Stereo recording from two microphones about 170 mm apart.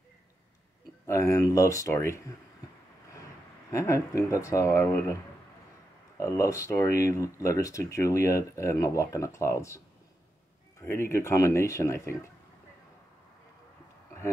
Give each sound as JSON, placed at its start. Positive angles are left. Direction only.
{"t": 1.0, "sound": "speech", "side_deg": 15}
{"t": 3.7, "sound": "speech", "side_deg": 15}
{"t": 6.1, "sound": "speech", "side_deg": 15}
{"t": 10.9, "sound": "speech", "side_deg": 15}